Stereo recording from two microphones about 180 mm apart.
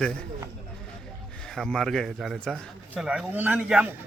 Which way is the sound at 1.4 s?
5° left (ahead or behind).